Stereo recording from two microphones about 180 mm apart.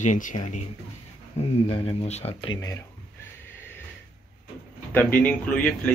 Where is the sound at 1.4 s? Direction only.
35° left (ahead or behind).